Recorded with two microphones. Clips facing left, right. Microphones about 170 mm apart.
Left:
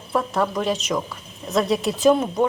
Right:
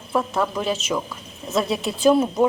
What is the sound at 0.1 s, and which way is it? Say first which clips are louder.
A woman's voice: even; centre (ahead or behind).